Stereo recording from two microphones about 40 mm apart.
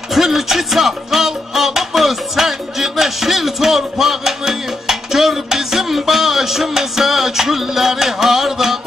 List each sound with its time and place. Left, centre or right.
0.1 s music: centre